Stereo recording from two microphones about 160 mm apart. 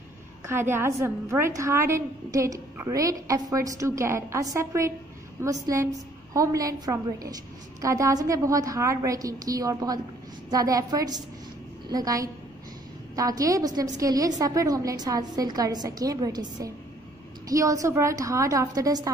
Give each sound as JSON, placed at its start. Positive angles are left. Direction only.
{"t": 0.5, "sound": "a woman's voice", "side_deg": -15}